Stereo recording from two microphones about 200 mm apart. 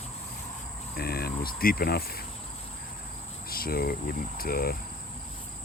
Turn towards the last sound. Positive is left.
turn(degrees=50)  # may be behind; listen again after turning